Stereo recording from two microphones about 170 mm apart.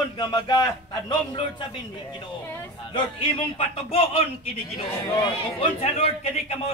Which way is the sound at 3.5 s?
35° left (ahead or behind).